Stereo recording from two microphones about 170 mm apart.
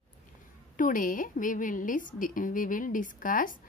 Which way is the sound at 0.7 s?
50° left (ahead or behind).